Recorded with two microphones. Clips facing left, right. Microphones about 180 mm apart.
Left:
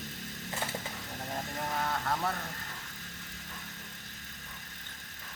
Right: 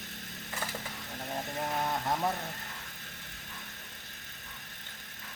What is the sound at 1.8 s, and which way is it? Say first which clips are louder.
Speech: right 1 dB; 20° right (ahead or behind).